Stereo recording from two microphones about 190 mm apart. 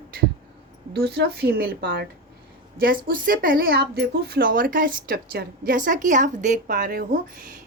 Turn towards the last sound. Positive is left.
turn(degrees=-45)  # may be behind; listen again after turning